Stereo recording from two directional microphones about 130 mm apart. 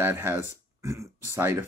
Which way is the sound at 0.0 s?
15° right (ahead or behind).